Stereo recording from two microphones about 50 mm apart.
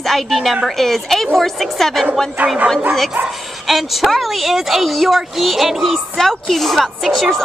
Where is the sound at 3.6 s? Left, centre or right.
Centre.